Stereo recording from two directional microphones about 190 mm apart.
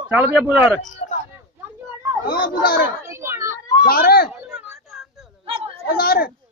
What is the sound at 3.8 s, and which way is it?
Speech, 50° left (ahead or behind).